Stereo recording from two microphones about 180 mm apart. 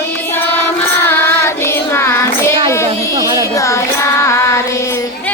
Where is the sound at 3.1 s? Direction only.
20° right (ahead or behind).